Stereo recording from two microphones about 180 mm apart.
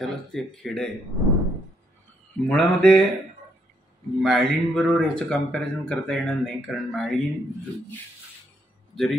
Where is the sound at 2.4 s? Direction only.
5° left (ahead or behind).